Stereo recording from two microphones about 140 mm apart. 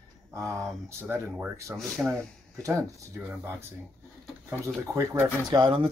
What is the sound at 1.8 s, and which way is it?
Speech, centre (ahead or behind).